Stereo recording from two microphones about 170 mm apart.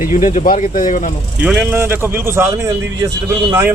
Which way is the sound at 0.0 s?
50° left (ahead or behind).